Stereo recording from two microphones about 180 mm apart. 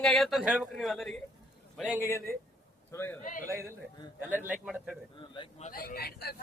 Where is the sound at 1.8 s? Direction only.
10° right (ahead or behind).